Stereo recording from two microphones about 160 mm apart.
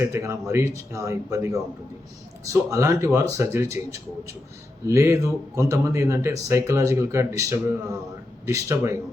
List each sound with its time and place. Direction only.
0.0 s speech: 15° right (ahead or behind)